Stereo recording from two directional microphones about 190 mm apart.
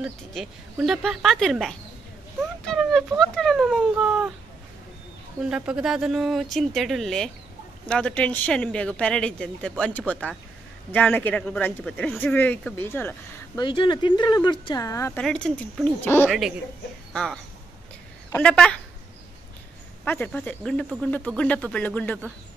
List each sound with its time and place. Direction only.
0.0 s speech: centre (ahead or behind)
5.5 s speech: 5° right (ahead or behind); by 13.1 s 10° left (ahead or behind)
13.6 s speech: 25° left (ahead or behind)
15.2 s speech: 5° left (ahead or behind)
20.1 s speech: 10° left (ahead or behind)